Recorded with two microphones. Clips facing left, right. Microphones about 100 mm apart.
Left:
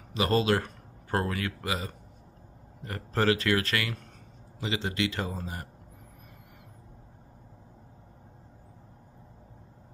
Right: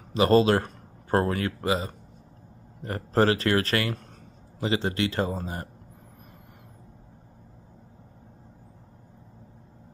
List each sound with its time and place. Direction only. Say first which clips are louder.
0.1 s speech: right 6 dB; 35° right (ahead or behind)
2.8 s speech: right 6 dB; 35° right (ahead or behind)